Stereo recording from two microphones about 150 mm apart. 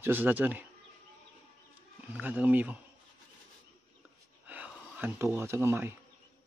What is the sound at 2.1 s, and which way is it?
Speech, 10° right (ahead or behind).